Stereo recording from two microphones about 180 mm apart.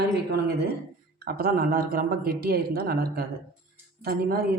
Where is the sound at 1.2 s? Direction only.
55° right (ahead or behind).